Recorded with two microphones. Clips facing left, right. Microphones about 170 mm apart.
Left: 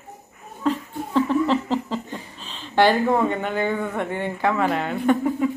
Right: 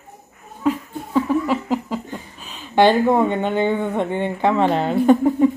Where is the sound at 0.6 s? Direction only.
10° right (ahead or behind).